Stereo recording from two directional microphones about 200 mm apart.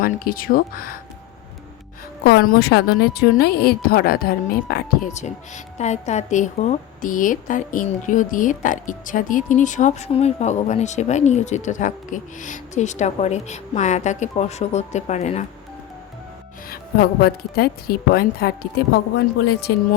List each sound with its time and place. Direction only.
0.0 s a woman's voice: 45° left (ahead or behind)
2.2 s a woman's voice: 50° left (ahead or behind); by 15.4 s 35° left (ahead or behind)
16.6 s a woman's voice: 50° left (ahead or behind)